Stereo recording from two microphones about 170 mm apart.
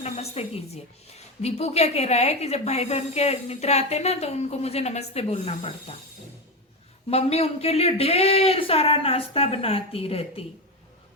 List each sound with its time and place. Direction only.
0.0 s a woman's voice: 40° left (ahead or behind)
7.1 s a woman's voice: 35° left (ahead or behind)